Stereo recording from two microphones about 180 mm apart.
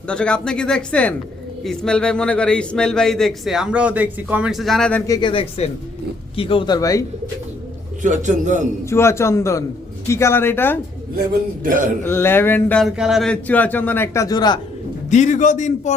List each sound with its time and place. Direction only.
0.1 s speech: 5° left (ahead or behind)
5.1 s a man's voice: 30° left (ahead or behind)
8.0 s a man's voice: 45° right (ahead or behind)
8.8 s speech: 15° left (ahead or behind)
11.6 s a man's voice: 50° right (ahead or behind)
12.0 s speech: 10° left (ahead or behind)
15.1 s a man's voice: 40° left (ahead or behind)